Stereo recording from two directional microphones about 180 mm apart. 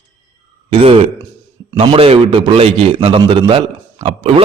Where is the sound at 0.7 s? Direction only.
30° right (ahead or behind).